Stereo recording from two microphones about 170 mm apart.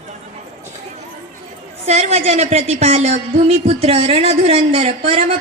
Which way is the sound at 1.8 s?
40° right (ahead or behind).